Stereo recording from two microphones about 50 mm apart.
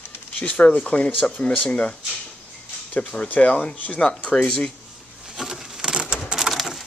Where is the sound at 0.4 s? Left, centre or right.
Left.